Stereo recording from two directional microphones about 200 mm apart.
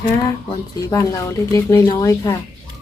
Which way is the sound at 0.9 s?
15° left (ahead or behind).